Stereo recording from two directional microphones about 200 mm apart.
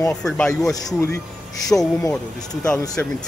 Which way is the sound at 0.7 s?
20° left (ahead or behind).